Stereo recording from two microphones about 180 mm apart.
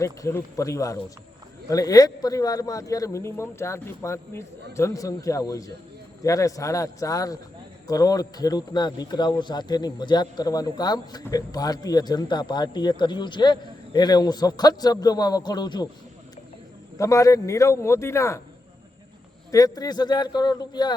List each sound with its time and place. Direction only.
0.0 s speech: 15° left (ahead or behind)
17.0 s speech: 15° left (ahead or behind)
19.5 s speech: 20° left (ahead or behind)